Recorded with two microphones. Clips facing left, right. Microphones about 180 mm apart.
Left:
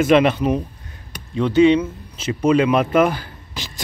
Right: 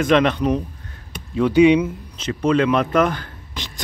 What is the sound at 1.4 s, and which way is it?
Speech, 10° right (ahead or behind).